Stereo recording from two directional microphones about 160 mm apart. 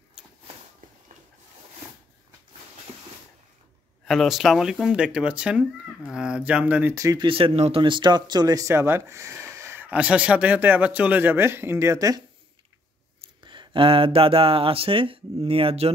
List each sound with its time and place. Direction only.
4.0 s speech: centre (ahead or behind); by 7.2 s 20° right (ahead or behind)
7.2 s speech: 35° right (ahead or behind); by 12.2 s 20° right (ahead or behind)
13.4 s speech: 30° right (ahead or behind)